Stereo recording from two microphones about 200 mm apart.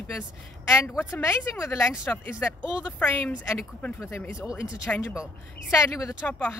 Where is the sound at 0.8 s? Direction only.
10° left (ahead or behind).